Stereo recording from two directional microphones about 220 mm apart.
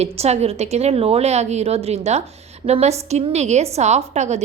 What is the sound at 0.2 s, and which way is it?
A woman's voice, 30° right (ahead or behind).